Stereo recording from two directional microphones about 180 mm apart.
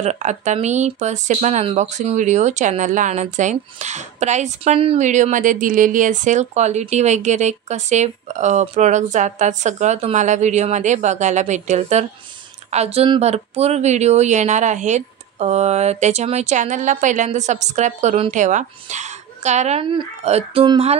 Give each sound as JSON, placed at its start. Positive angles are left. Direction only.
{"t": 0.0, "sound": "speech", "side_deg": -40}